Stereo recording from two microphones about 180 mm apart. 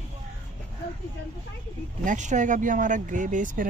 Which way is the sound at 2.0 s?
45° right (ahead or behind).